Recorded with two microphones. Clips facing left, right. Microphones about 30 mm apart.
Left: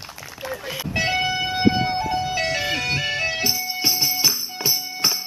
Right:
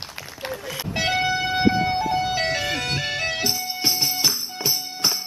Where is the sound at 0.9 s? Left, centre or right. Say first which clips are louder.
Even; centre.